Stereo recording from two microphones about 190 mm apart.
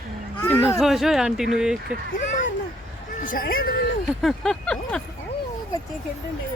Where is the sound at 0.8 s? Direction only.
Centre (ahead or behind).